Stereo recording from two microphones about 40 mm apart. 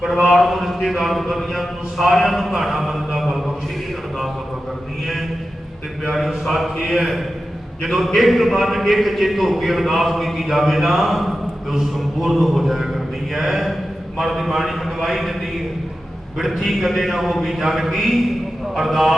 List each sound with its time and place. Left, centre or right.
0.3 s a man's voice: centre
6.1 s a man's voice: centre
16.6 s a man's voice: centre